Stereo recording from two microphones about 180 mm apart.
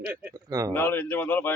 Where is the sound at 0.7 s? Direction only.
10° left (ahead or behind).